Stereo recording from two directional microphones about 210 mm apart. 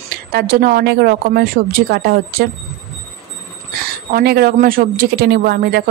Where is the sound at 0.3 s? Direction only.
45° right (ahead or behind).